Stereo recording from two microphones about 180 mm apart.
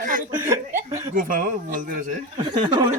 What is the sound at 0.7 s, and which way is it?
Chuckle, 15° right (ahead or behind).